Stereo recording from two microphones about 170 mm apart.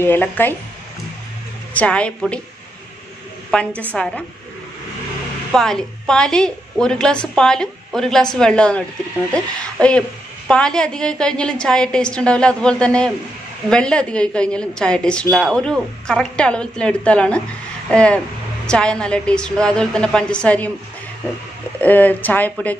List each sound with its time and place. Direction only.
0.0 s speech: 10° left (ahead or behind)
1.7 s speech: 10° left (ahead or behind)
3.4 s a woman's voice: 5° left (ahead or behind)
5.5 s a woman's voice: 5° left (ahead or behind)
21.7 s speech: 10° left (ahead or behind)